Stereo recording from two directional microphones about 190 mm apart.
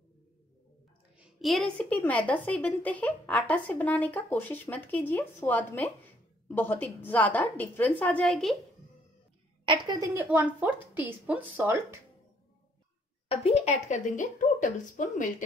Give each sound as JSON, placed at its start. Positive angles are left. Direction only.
{"t": 1.1, "sound": "a woman's voice", "side_deg": -5}
{"t": 9.7, "sound": "a woman's voice", "side_deg": -20}
{"t": 10.1, "sound": "a woman's voice", "side_deg": -10}
{"t": 13.3, "sound": "a woman's voice", "side_deg": 30}